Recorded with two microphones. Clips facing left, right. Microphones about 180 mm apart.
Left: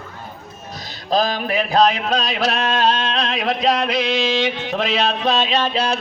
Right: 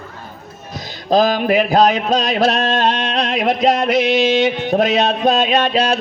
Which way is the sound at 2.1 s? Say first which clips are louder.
Right 5 dB; 50° right (ahead or behind).